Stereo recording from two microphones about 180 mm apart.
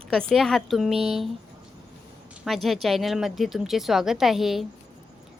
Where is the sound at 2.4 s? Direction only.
Centre (ahead or behind).